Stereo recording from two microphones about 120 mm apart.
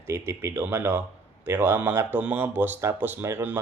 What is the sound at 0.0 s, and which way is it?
Speech, 20° right (ahead or behind).